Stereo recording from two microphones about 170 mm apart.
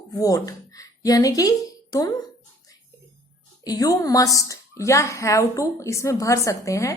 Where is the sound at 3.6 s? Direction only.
20° left (ahead or behind).